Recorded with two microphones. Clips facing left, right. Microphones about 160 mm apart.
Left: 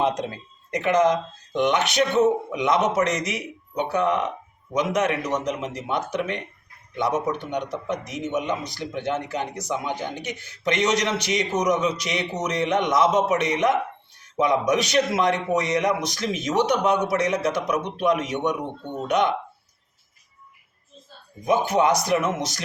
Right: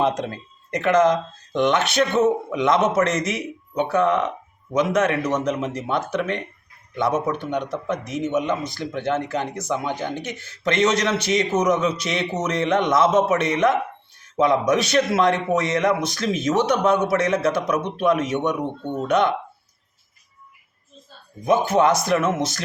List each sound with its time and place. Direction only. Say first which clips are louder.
0.0 s speech: right 2 dB; 15° left (ahead or behind)
21.4 s speech: right 2 dB; 15° left (ahead or behind)